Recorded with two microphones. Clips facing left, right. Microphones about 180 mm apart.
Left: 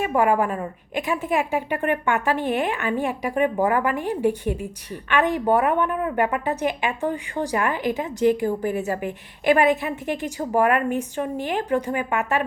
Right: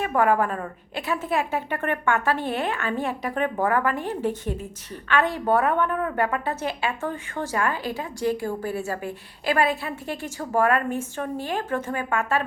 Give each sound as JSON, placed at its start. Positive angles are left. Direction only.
{"t": 0.0, "sound": "a woman's voice", "side_deg": 15}